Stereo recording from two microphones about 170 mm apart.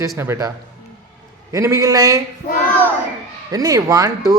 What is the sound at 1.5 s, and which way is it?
Speech, 20° right (ahead or behind).